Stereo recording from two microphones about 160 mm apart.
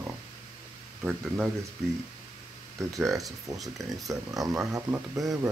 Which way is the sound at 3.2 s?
20° right (ahead or behind).